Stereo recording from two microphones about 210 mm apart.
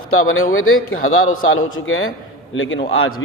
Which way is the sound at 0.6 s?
80° left.